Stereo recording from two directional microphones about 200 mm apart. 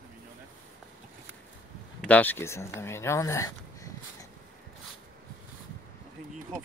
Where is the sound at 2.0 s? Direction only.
5° left (ahead or behind).